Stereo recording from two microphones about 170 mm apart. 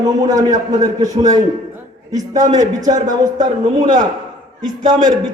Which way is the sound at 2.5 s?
20° right (ahead or behind).